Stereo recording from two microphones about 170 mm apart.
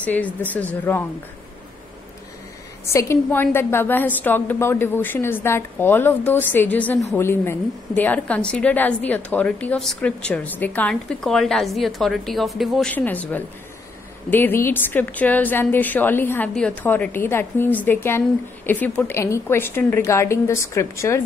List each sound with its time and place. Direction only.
0.0 s a woman's voice: 10° left (ahead or behind)
2.9 s a woman's voice: 15° left (ahead or behind)